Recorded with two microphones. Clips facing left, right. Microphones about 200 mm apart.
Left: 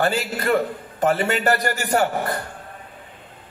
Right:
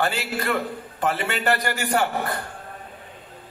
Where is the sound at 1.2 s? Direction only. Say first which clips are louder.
Left 3 dB; 45° left (ahead or behind).